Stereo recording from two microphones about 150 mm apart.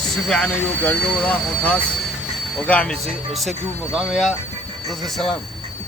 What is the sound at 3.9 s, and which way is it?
Speech, centre (ahead or behind).